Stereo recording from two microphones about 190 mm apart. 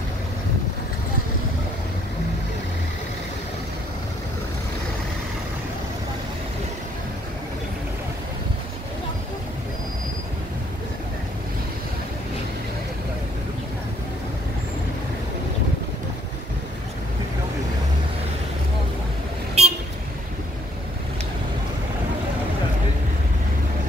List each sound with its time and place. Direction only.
19.6 s vehicle: 35° right (ahead or behind)